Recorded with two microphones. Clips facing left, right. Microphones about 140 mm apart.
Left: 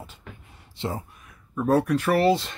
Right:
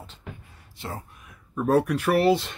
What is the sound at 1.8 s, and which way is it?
Speech, 10° right (ahead or behind).